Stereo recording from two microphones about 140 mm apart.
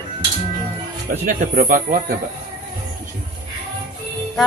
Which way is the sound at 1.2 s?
75° right (ahead or behind).